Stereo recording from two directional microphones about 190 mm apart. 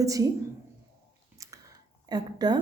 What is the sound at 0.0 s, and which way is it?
Speech, 20° right (ahead or behind).